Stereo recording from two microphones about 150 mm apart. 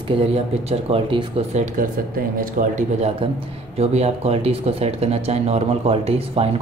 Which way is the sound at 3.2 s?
35° right (ahead or behind).